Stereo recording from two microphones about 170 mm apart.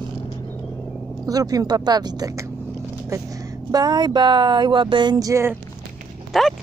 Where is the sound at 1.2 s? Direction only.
20° right (ahead or behind).